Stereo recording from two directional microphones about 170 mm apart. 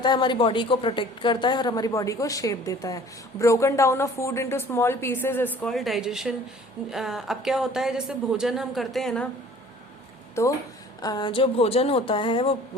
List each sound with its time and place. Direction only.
0.0 s a woman's voice: 25° left (ahead or behind); by 9.3 s 5° left (ahead or behind)
10.4 s a woman's voice: 15° left (ahead or behind); by 12.5 s 30° left (ahead or behind)